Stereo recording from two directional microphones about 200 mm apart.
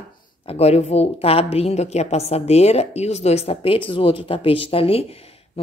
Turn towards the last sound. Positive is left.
turn(degrees=30)  # may be behind; listen again after turning